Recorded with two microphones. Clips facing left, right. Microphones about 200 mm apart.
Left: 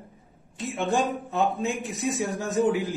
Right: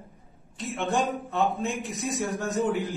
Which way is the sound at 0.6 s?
Centre (ahead or behind).